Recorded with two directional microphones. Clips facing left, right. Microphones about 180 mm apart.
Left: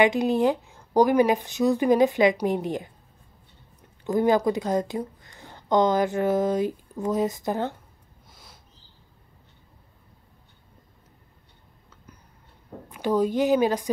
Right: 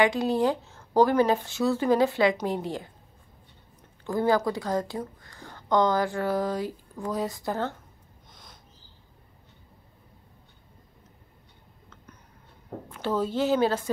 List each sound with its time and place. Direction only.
0.0 s speech: 20° left (ahead or behind)
4.0 s speech: 20° left (ahead or behind)
8.3 s a sound: 5° left (ahead or behind)
12.9 s speech: 15° left (ahead or behind)